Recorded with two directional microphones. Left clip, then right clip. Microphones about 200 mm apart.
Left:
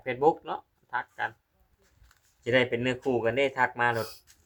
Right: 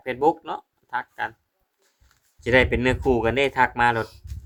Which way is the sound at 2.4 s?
45° right (ahead or behind).